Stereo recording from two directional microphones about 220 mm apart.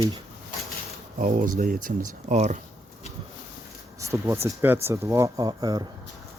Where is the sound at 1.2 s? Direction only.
35° right (ahead or behind).